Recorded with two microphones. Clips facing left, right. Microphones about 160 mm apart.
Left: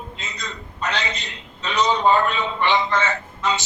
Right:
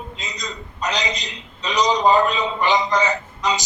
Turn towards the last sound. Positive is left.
turn(degrees=-15)  # may be behind; listen again after turning